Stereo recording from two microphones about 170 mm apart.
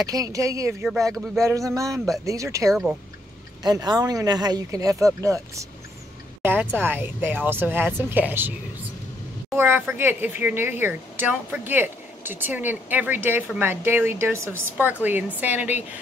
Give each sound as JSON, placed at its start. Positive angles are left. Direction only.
{"t": 0.0, "sound": "speech", "side_deg": -20}
{"t": 9.6, "sound": "speech", "side_deg": -15}